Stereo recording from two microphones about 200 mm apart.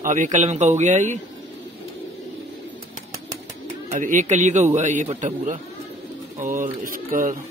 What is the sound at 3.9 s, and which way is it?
Speech, 40° right (ahead or behind).